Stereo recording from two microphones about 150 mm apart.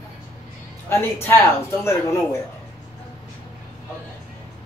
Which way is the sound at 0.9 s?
15° left (ahead or behind).